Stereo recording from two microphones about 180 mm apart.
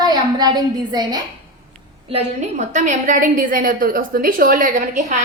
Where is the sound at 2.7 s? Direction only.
40° right (ahead or behind).